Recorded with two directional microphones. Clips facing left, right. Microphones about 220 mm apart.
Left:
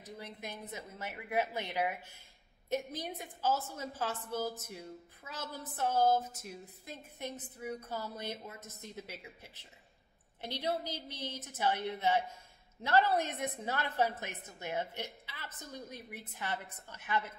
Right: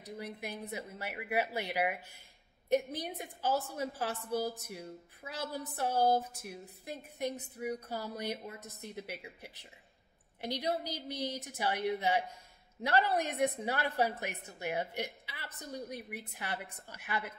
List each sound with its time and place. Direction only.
0.0 s a woman's voice: 10° right (ahead or behind)